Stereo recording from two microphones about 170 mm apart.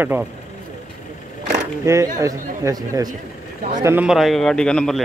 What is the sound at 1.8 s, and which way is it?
A man's voice, 20° right (ahead or behind).